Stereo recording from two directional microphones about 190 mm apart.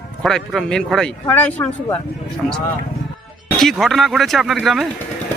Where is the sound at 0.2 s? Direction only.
Centre (ahead or behind).